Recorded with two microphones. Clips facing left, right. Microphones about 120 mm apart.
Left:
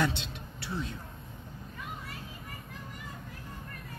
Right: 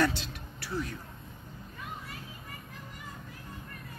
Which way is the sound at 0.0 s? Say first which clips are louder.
Right 2 dB; 20° left (ahead or behind).